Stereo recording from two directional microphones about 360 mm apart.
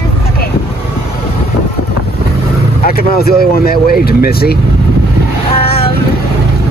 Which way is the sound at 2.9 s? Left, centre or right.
Left.